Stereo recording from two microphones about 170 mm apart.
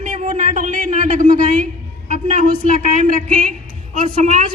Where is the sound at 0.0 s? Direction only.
45° right (ahead or behind).